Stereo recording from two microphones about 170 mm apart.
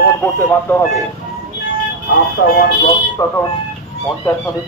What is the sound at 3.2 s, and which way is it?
Speech, 20° left (ahead or behind).